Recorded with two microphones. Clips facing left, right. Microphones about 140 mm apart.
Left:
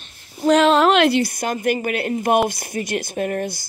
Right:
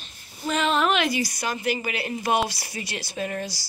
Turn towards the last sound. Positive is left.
turn(degrees=55)  # may be behind; listen again after turning